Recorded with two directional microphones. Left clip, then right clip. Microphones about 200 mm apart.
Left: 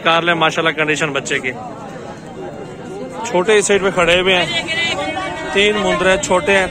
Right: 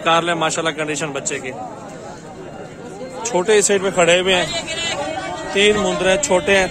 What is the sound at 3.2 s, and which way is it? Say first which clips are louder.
A man's voice: left 2 dB; 20° right (ahead or behind).